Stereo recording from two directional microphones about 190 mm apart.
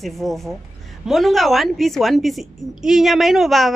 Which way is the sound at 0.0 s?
Centre (ahead or behind).